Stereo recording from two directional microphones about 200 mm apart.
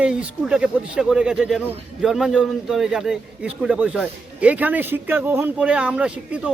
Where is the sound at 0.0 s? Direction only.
5° right (ahead or behind).